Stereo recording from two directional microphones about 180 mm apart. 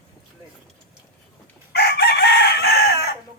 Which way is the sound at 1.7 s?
60° left (ahead or behind).